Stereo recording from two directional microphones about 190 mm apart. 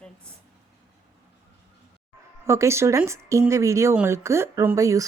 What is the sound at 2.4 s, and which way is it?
Speech, 15° right (ahead or behind).